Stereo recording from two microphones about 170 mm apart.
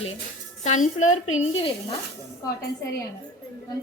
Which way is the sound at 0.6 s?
45° left (ahead or behind).